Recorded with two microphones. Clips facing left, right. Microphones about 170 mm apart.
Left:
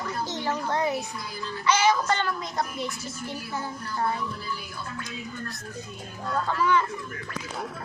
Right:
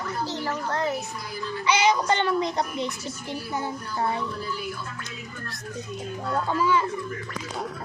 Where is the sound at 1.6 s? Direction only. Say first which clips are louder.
Right 1 dB; 15° right (ahead or behind).